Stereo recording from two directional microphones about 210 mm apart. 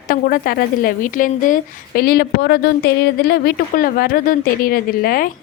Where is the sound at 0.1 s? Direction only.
45° left (ahead or behind).